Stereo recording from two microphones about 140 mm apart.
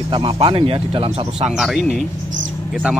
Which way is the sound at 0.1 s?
35° right (ahead or behind).